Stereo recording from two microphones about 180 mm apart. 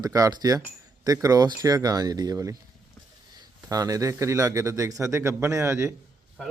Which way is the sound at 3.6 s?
20° right (ahead or behind).